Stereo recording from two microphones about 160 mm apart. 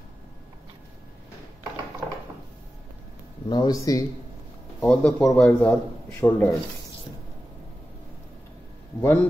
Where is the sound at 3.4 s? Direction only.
25° left (ahead or behind).